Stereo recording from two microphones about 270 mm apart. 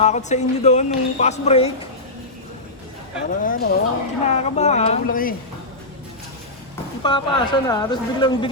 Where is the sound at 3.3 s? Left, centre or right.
Left.